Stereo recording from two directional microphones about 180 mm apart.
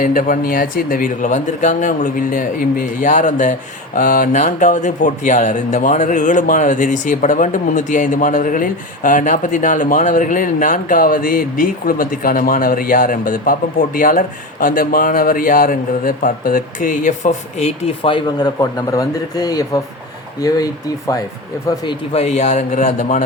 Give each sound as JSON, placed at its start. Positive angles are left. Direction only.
{"t": 0.0, "sound": "speech", "side_deg": 45}
{"t": 21.8, "sound": "a man's voice", "side_deg": 35}